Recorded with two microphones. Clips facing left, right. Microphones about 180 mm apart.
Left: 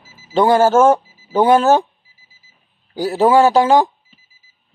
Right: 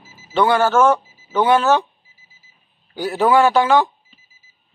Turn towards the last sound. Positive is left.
turn(degrees=40)  # may be behind; listen again after turning